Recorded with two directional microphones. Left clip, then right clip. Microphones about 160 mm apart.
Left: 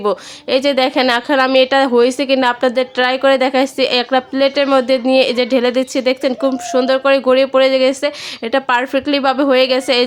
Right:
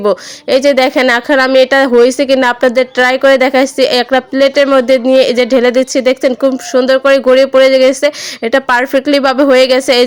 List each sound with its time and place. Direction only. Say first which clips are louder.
0.0 s a woman's voice: right 5 dB; 25° right (ahead or behind)